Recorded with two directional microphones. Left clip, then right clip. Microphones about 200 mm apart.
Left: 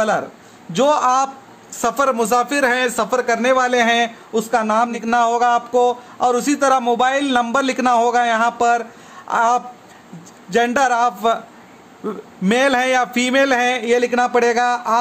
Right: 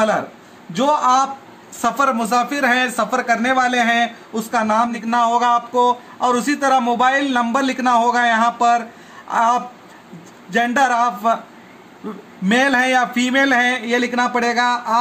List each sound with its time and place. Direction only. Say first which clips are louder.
0.7 s a man's voice: even; 55° left (ahead or behind)
12.4 s a man's voice: even; 55° left (ahead or behind)